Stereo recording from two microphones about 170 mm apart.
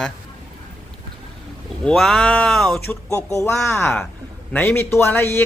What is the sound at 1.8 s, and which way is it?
Speech, centre (ahead or behind).